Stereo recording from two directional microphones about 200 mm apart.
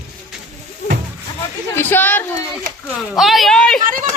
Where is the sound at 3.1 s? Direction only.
Centre (ahead or behind).